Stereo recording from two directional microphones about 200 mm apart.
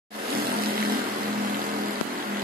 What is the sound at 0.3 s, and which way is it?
Vehicle, 50° right (ahead or behind).